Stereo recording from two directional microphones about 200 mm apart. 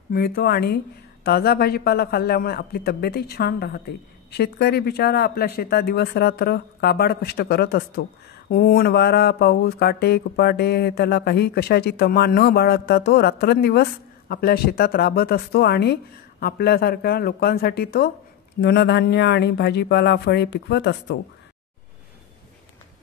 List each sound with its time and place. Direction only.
0.1 s a man's voice: 50° left (ahead or behind)